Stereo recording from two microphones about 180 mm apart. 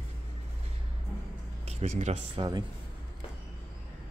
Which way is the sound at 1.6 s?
40° right (ahead or behind).